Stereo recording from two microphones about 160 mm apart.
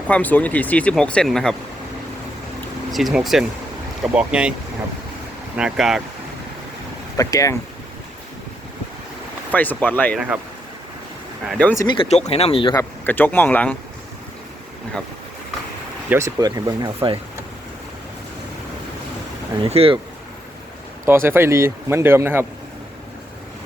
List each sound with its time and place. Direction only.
0.1 s speech: 10° left (ahead or behind)
2.9 s speech: centre (ahead or behind)
5.5 s speech: 5° right (ahead or behind)
7.2 s speech: 20° left (ahead or behind)
9.5 s speech: 10° left (ahead or behind)
10.2 s speech: 10° right (ahead or behind)
11.4 s speech: centre (ahead or behind)
11.8 s speech: 25° left (ahead or behind)
12.0 s speech: 40° left (ahead or behind)
12.7 s speech: 10° left (ahead or behind)
16.0 s speech: 15° right (ahead or behind)
19.6 s speech: 40° right (ahead or behind)
21.0 s speech: 15° right (ahead or behind)